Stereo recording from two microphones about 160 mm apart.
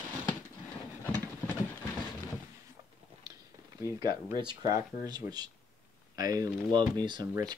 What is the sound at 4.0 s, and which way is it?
Speech, 25° right (ahead or behind).